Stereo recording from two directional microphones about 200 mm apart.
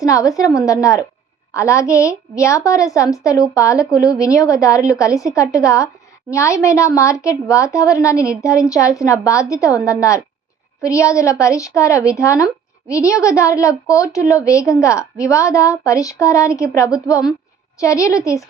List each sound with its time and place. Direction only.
0.0 s a woman's voice: 15° left (ahead or behind)